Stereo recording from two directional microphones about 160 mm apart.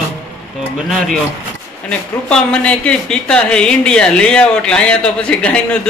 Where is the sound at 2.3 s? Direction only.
5° left (ahead or behind).